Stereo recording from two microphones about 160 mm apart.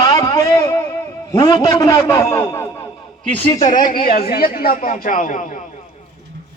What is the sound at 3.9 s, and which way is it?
Speech, 65° left (ahead or behind).